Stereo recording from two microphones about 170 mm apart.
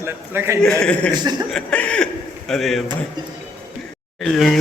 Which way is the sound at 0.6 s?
5° left (ahead or behind).